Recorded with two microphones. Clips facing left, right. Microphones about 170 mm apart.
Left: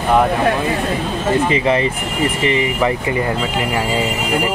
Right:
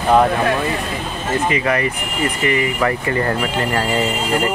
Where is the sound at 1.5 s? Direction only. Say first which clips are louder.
Left 3 dB; 25° left (ahead or behind).